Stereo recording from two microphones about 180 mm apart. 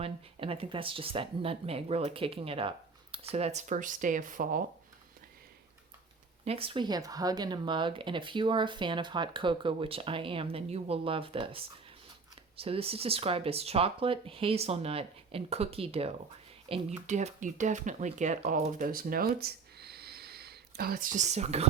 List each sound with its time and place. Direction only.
0.0 s speech: 30° right (ahead or behind); by 4.6 s 50° right (ahead or behind)
6.4 s speech: 35° right (ahead or behind)